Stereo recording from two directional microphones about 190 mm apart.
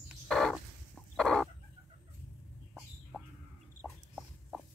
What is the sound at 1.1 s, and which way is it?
Chicken, centre (ahead or behind).